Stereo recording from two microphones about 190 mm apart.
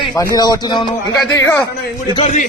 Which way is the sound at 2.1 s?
40° left (ahead or behind).